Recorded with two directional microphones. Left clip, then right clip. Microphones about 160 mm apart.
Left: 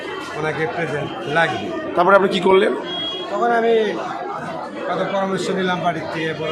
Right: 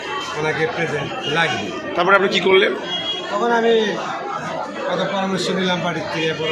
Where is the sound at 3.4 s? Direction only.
5° left (ahead or behind).